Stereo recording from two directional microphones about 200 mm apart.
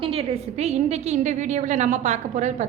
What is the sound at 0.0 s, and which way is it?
A woman's voice, 30° right (ahead or behind).